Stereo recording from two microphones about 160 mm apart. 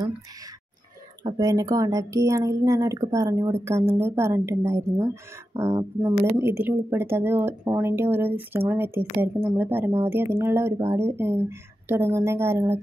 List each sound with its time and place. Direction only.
1.2 s speech: 20° right (ahead or behind)